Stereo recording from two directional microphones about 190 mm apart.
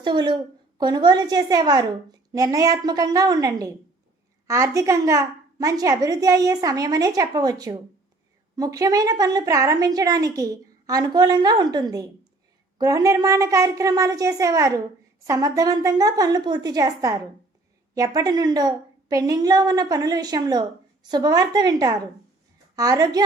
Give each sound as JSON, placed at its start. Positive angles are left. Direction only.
{"t": 0.0, "sound": "a woman's voice", "side_deg": -25}